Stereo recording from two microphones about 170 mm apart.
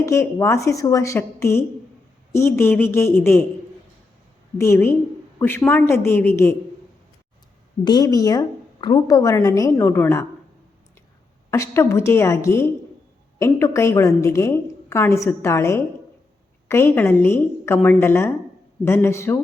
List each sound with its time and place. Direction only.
0.0 s a woman's voice: 15° left (ahead or behind)
4.5 s a woman's voice: 15° left (ahead or behind)
7.9 s a woman's voice: 20° left (ahead or behind)
11.5 s a woman's voice: 15° left (ahead or behind)